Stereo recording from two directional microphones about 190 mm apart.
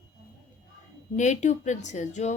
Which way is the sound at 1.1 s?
40° left (ahead or behind).